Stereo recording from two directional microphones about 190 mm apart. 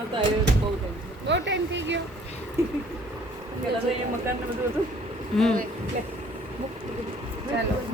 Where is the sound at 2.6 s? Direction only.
15° right (ahead or behind).